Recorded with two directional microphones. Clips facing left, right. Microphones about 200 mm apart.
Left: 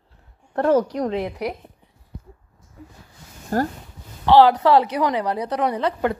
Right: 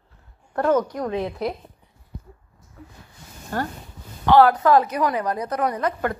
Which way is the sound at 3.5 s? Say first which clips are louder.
Left 5 dB; 40° left (ahead or behind).